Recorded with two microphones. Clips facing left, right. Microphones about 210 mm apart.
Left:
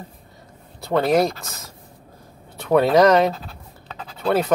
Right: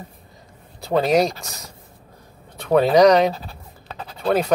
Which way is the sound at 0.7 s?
Centre (ahead or behind).